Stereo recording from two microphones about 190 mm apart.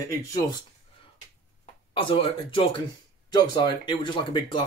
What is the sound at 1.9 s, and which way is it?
Speech, 30° left (ahead or behind).